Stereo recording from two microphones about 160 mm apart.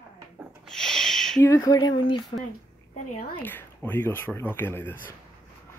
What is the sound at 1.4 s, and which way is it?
Speech, 20° left (ahead or behind).